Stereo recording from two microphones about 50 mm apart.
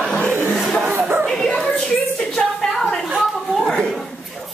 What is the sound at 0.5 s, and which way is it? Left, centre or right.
Chuckle, centre.